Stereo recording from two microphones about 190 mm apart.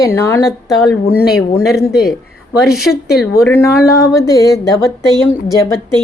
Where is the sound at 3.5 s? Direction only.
10° left (ahead or behind).